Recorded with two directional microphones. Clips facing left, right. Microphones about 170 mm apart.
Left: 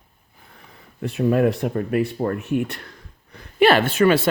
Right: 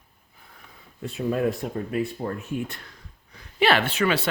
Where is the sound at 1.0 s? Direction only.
70° left (ahead or behind).